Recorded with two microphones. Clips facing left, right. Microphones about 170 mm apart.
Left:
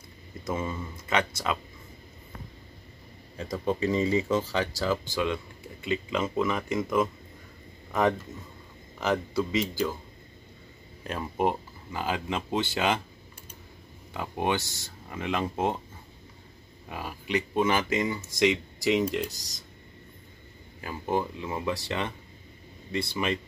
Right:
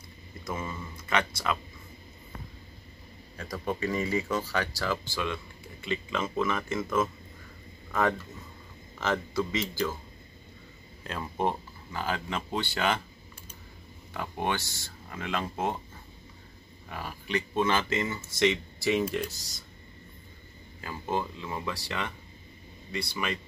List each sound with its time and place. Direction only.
0.5 s speech: 20° left (ahead or behind)
3.3 s speech: 20° left (ahead or behind)
8.9 s speech: 15° left (ahead or behind)
11.1 s speech: 15° left (ahead or behind)
14.1 s speech: 15° left (ahead or behind)
16.9 s speech: 15° left (ahead or behind)
20.8 s speech: 15° left (ahead or behind)